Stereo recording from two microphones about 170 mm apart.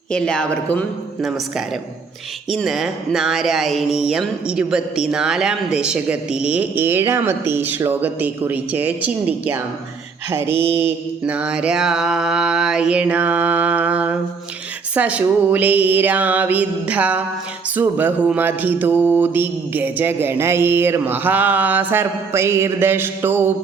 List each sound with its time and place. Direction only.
0.1 s speech: 5° left (ahead or behind)
2.5 s speech: centre (ahead or behind)
10.7 s mantra: 35° right (ahead or behind)
11.3 s speech: 5° right (ahead or behind)
14.9 s mantra: 10° right (ahead or behind)